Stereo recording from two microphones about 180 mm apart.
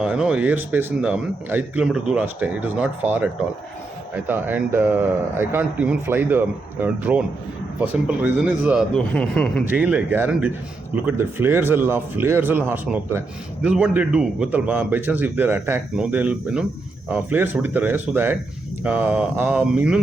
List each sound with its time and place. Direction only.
0.0 s speech: 5° right (ahead or behind)
8.9 s a man's voice: 5° left (ahead or behind)
9.6 s speech: 10° right (ahead or behind)